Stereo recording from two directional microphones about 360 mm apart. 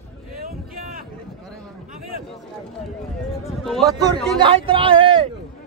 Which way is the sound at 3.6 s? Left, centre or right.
Centre.